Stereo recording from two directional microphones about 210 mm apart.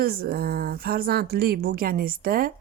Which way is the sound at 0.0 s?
45° right (ahead or behind).